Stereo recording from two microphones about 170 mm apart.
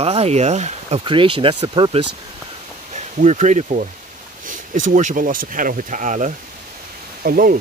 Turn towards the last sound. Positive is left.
turn(degrees=-55)  # may be behind; listen again after turning